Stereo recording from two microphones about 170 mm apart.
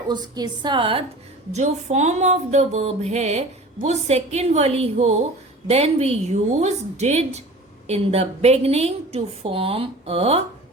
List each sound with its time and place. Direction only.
0.1 s a woman's voice: 25° right (ahead or behind)
1.5 s music: 40° right (ahead or behind)